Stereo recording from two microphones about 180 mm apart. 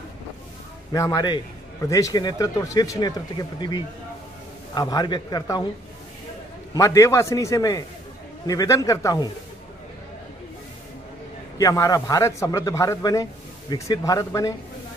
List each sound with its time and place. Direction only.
0.9 s a man's voice: 20° left (ahead or behind)
6.7 s a man's voice: 20° left (ahead or behind)
11.5 s a man's voice: 20° left (ahead or behind)